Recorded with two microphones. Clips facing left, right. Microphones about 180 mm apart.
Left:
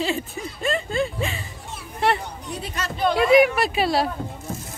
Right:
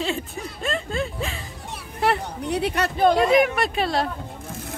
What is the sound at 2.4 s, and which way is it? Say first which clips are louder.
Speech: right 7 dB; 65° right (ahead or behind).